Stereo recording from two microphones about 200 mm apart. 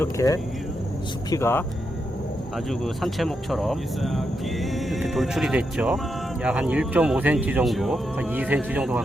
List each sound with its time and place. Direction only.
0.0 s speech: 15° left (ahead or behind)
2.6 s speech: centre (ahead or behind)